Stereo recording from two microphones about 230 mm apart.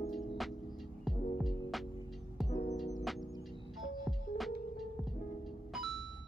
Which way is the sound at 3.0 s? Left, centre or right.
Centre.